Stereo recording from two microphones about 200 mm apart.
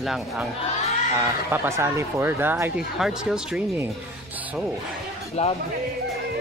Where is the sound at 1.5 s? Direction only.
10° right (ahead or behind).